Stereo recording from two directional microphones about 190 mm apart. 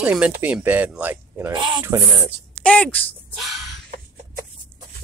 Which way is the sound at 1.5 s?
25° right (ahead or behind).